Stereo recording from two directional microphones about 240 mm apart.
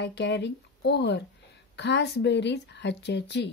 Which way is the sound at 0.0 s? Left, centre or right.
Left.